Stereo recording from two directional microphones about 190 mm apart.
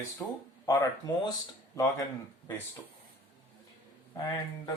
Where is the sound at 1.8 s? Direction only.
15° left (ahead or behind).